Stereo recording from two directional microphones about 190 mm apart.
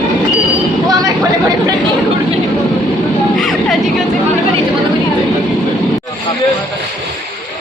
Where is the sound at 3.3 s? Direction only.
Centre (ahead or behind).